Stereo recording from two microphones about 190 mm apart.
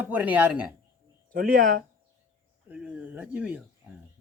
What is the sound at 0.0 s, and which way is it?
Speech, 10° right (ahead or behind).